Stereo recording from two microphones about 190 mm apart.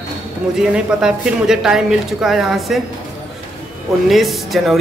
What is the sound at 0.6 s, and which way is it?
Speech, 5° right (ahead or behind).